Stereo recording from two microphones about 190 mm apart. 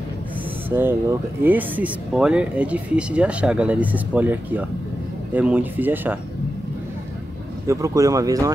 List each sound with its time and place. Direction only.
0.7 s speech: 10° right (ahead or behind)
7.6 s speech: 15° right (ahead or behind)